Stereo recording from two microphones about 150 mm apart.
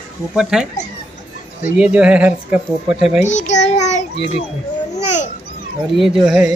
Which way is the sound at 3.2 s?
55° left (ahead or behind).